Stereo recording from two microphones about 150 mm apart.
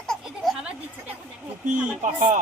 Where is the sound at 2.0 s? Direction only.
60° right (ahead or behind).